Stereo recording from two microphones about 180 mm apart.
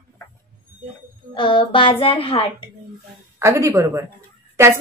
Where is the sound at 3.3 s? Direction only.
15° right (ahead or behind).